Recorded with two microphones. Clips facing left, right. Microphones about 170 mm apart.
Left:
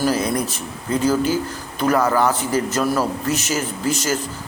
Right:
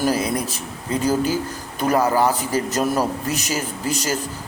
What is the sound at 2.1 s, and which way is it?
Speech, 35° right (ahead or behind).